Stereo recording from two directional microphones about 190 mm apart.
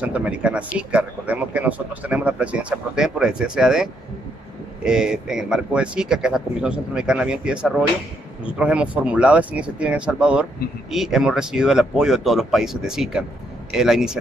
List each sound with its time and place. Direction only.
0.0 s speech: 5° right (ahead or behind)